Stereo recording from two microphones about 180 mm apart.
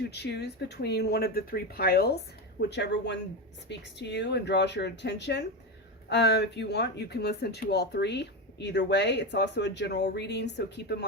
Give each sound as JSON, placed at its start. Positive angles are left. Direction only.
{"t": 0.1, "sound": "speech", "side_deg": 70}